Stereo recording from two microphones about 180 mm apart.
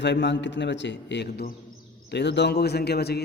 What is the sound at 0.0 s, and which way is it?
A man's voice, 75° left (ahead or behind).